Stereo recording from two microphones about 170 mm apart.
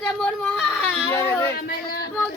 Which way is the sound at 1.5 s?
65° left (ahead or behind).